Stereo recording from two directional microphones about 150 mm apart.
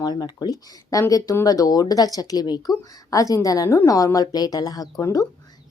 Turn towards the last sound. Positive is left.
turn(degrees=25)  # may be behind; listen again after turning